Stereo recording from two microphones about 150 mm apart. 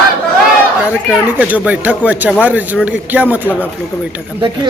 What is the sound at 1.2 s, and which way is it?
Speech, 10° right (ahead or behind).